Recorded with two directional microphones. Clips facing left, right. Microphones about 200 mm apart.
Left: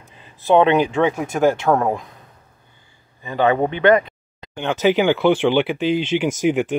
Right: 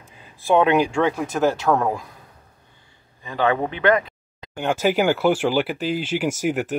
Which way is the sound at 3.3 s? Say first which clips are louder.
Left 4 dB; centre (ahead or behind).